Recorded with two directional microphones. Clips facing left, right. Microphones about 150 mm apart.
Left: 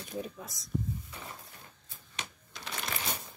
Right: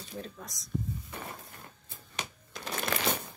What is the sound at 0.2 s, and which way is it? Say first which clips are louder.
Speech: left 3 dB; 5° left (ahead or behind).